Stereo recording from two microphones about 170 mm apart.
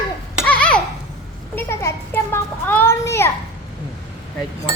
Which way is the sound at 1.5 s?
15° left (ahead or behind).